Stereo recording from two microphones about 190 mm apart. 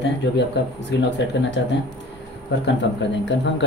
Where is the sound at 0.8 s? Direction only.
65° left (ahead or behind).